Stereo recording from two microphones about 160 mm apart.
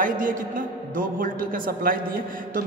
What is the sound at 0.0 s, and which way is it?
A man's voice, 55° right (ahead or behind).